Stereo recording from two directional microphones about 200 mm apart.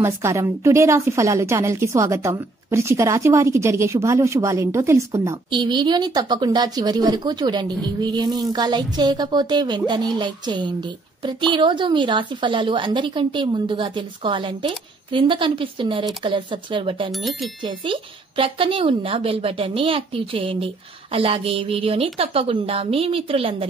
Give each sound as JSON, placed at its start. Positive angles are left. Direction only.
{"t": 0.0, "sound": "a woman's voice", "side_deg": -15}
{"t": 17.1, "sound": "speech", "side_deg": 0}
{"t": 17.6, "sound": "a woman's voice", "side_deg": -25}